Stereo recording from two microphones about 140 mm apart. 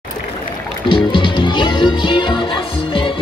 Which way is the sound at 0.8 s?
35° left (ahead or behind).